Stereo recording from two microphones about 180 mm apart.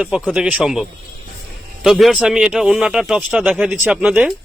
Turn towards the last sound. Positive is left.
turn(degrees=-5)  # may be behind; listen again after turning